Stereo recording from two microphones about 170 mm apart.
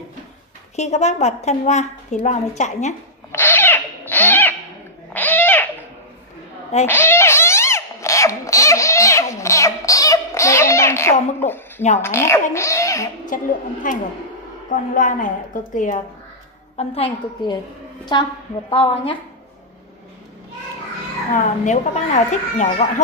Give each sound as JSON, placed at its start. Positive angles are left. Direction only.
{"t": 0.7, "sound": "a woman's voice", "side_deg": 40}
{"t": 3.3, "sound": "a sound", "side_deg": 15}
{"t": 5.1, "sound": "owl", "side_deg": 10}
{"t": 6.9, "sound": "a sound", "side_deg": 15}
{"t": 12.0, "sound": "speech", "side_deg": 15}
{"t": 13.3, "sound": "speech", "side_deg": 55}
{"t": 16.7, "sound": "a woman's voice", "side_deg": 35}
{"t": 21.6, "sound": "speech", "side_deg": 40}